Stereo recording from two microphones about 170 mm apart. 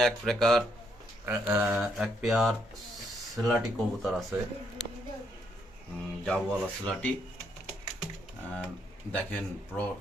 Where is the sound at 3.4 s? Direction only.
20° right (ahead or behind).